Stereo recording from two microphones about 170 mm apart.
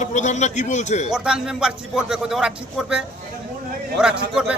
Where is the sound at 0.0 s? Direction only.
45° left (ahead or behind).